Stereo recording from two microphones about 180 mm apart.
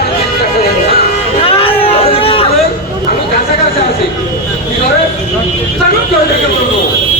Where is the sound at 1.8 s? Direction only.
30° left (ahead or behind).